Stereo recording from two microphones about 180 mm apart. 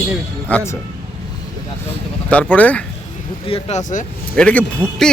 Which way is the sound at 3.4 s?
35° left (ahead or behind).